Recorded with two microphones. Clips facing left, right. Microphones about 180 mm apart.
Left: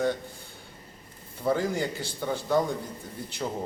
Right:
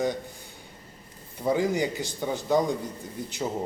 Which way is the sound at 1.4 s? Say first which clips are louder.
Right 2 dB; 15° right (ahead or behind).